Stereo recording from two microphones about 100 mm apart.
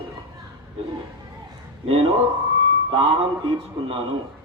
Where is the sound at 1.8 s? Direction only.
75° right (ahead or behind).